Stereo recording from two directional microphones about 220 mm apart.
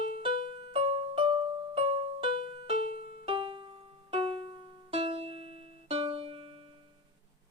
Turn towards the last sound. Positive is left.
turn(degrees=-25)  # may be behind; listen again after turning